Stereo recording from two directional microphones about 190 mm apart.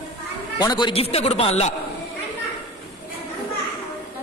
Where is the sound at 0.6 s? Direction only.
25° left (ahead or behind).